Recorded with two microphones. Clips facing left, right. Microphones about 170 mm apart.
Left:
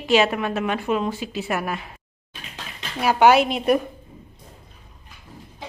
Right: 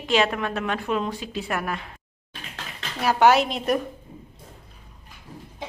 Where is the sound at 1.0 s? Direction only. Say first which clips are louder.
Left 3 dB; 5° left (ahead or behind).